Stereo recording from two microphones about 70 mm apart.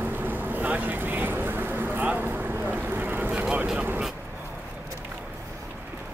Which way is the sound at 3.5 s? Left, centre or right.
Centre.